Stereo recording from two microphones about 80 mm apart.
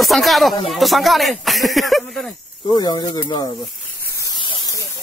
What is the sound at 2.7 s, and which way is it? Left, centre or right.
Speech, left.